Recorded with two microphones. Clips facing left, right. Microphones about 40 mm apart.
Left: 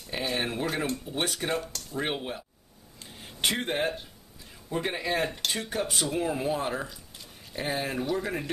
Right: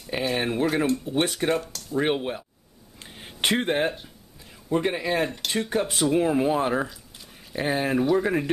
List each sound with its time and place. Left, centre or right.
0.0 s speech: centre
3.0 s a sound: right
4.6 s speech: centre